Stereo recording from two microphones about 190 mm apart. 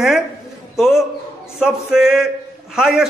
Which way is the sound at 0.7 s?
Centre (ahead or behind).